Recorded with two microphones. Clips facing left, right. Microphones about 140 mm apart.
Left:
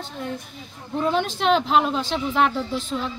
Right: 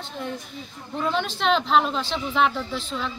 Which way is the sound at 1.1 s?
45° left (ahead or behind).